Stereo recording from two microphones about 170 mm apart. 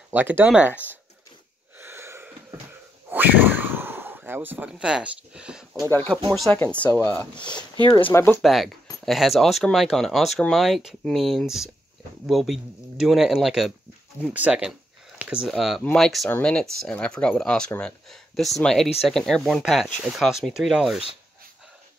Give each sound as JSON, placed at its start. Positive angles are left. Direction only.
{"t": 0.1, "sound": "speech", "side_deg": -10}
{"t": 1.8, "sound": "wheeze", "side_deg": -15}
{"t": 3.1, "sound": "a sound", "side_deg": -10}
{"t": 5.9, "sound": "speech", "side_deg": 10}
{"t": 7.8, "sound": "speech", "side_deg": 30}
{"t": 8.1, "sound": "speech", "side_deg": 15}
{"t": 8.4, "sound": "speech", "side_deg": 0}